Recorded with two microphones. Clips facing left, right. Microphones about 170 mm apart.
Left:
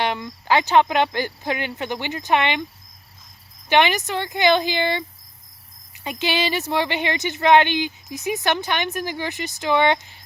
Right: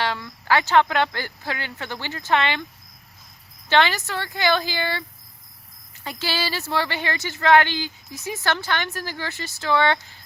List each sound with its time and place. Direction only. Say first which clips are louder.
0.0 s speech: left 2 dB; 20° left (ahead or behind)
3.7 s speech: left 2 dB; 20° left (ahead or behind)